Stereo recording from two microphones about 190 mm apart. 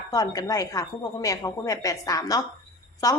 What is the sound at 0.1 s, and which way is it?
A woman's voice, 20° left (ahead or behind).